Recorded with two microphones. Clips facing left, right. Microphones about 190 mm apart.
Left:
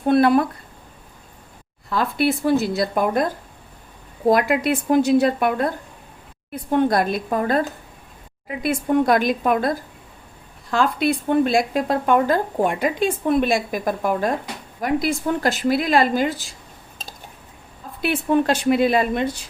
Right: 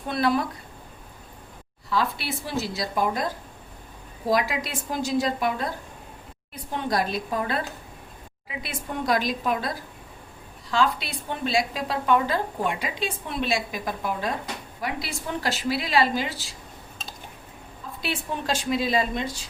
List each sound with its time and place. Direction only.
0.1 s a woman's voice: 55° left (ahead or behind)
1.9 s a woman's voice: 50° left (ahead or behind)
4.3 s a woman's voice: 55° left (ahead or behind)
18.0 s a woman's voice: 60° left (ahead or behind)